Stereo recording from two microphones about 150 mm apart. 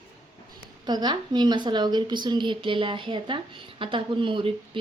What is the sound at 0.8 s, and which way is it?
A woman's voice, 25° right (ahead or behind).